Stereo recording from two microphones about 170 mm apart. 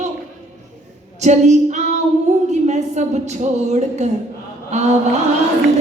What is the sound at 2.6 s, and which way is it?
A woman's voice, 45° right (ahead or behind).